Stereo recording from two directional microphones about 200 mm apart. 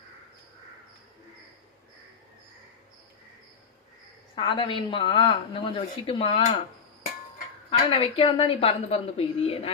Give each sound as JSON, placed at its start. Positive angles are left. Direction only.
{"t": 4.4, "sound": "speech", "side_deg": 25}
{"t": 7.7, "sound": "speech", "side_deg": 25}